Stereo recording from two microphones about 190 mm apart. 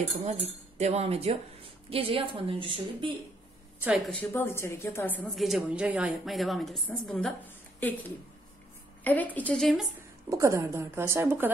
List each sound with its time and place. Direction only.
0.1 s speech: 35° right (ahead or behind)
3.8 s a woman's voice: centre (ahead or behind)
9.0 s speech: 10° left (ahead or behind)
10.3 s a woman's voice: 15° right (ahead or behind)